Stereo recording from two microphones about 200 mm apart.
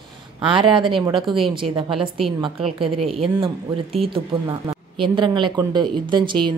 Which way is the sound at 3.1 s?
30° right (ahead or behind).